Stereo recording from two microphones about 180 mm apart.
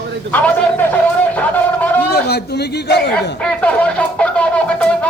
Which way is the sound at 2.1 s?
65° left (ahead or behind).